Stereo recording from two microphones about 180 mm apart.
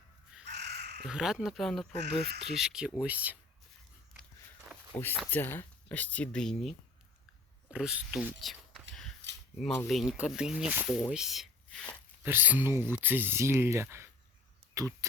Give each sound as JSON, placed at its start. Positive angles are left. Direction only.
{"t": 0.4, "sound": "crow", "side_deg": -70}
{"t": 1.0, "sound": "speech", "side_deg": -5}
{"t": 2.0, "sound": "speech", "side_deg": -65}
{"t": 2.4, "sound": "speech", "side_deg": 0}
{"t": 5.3, "sound": "speech", "side_deg": 10}
{"t": 9.8, "sound": "speech", "side_deg": 0}
{"t": 12.2, "sound": "speech", "side_deg": -10}